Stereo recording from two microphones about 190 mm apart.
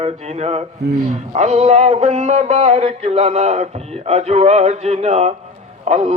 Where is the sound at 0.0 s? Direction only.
35° right (ahead or behind).